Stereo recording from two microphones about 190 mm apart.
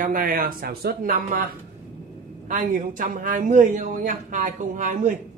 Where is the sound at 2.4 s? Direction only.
45° right (ahead or behind).